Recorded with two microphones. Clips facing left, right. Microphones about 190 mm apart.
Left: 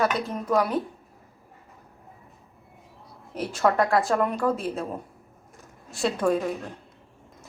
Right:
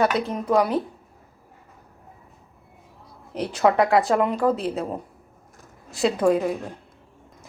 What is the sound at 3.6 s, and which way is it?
Speech, 20° right (ahead or behind).